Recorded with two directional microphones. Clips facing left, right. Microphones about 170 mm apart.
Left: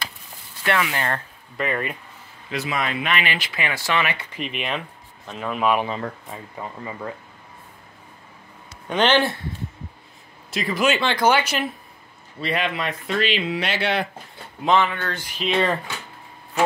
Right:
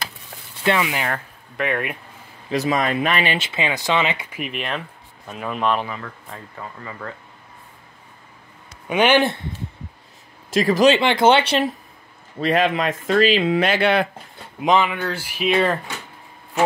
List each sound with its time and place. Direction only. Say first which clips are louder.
0.7 s speech: right 3 dB; 20° right (ahead or behind)
1.0 s speech: even; 5° right (ahead or behind)
2.5 s speech: right 6 dB; 40° right (ahead or behind); by 4.3 s 20° right (ahead or behind)
4.3 s speech: right 1 dB; 5° right (ahead or behind)
5.9 s speech: left 4 dB; 35° left (ahead or behind)
6.3 s speech: left 2 dB; 15° left (ahead or behind)
8.8 s a man's voice: right 2 dB; 10° right (ahead or behind)
10.5 s speech: right 7 dB; 45° right (ahead or behind)
11.0 s speech: right 4 dB; 20° right (ahead or behind)
12.4 s speech: right 6 dB; 45° right (ahead or behind)
14.6 s speech: right 2 dB; 15° right (ahead or behind)